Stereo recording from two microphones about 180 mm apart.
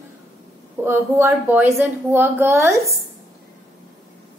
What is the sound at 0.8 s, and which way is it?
A woman's voice, 15° right (ahead or behind).